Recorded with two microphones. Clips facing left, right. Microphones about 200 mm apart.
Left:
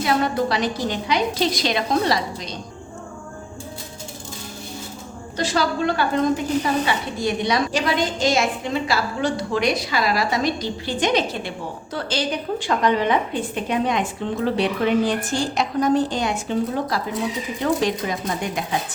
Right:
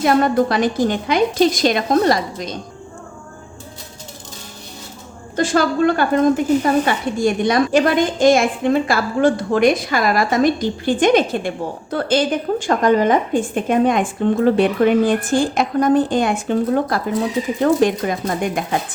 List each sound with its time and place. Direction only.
0.0 s a woman's voice: 50° right (ahead or behind)
5.4 s a woman's voice: 50° right (ahead or behind)